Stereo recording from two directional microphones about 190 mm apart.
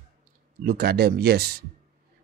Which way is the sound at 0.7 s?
55° right (ahead or behind).